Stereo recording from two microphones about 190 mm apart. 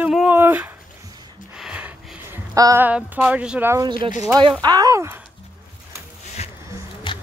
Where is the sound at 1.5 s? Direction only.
5° right (ahead or behind).